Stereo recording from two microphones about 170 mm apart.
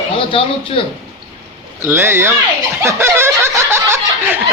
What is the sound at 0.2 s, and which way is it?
Speech, 30° left (ahead or behind).